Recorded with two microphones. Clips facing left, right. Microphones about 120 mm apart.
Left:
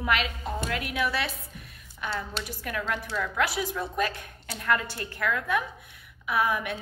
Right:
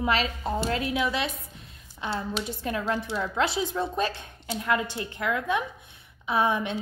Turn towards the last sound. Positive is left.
turn(degrees=-25)  # may be behind; listen again after turning